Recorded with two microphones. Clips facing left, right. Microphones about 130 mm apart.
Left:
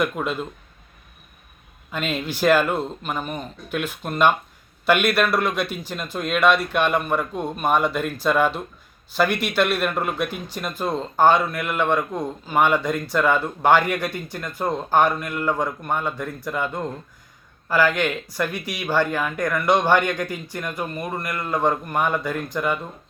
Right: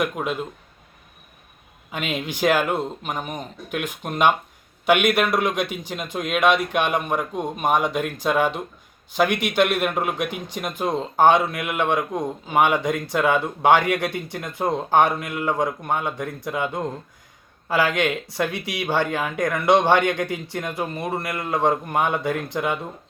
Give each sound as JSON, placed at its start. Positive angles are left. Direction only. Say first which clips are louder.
{"t": 0.0, "sound": "a man's voice", "louder": "left 1 dB", "side_deg": -10}
{"t": 1.9, "sound": "a man's voice", "louder": "left 1 dB", "side_deg": -15}